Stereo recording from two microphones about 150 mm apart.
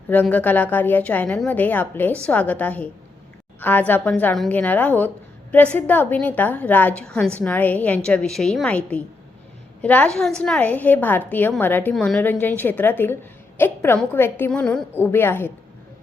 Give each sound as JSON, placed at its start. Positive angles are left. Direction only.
{"t": 0.1, "sound": "a woman's voice", "side_deg": 10}